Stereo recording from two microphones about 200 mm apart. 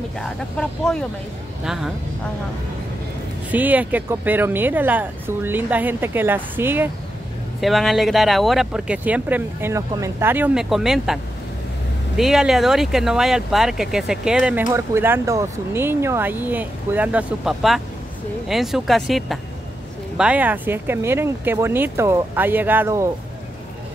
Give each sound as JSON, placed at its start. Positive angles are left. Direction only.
{"t": 0.2, "sound": "speech", "side_deg": 5}
{"t": 3.5, "sound": "speech", "side_deg": -10}
{"t": 12.2, "sound": "speech", "side_deg": 0}